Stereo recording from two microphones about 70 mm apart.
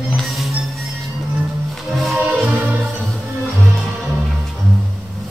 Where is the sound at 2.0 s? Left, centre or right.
Centre.